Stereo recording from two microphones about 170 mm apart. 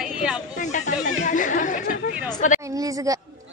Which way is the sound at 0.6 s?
45° left (ahead or behind).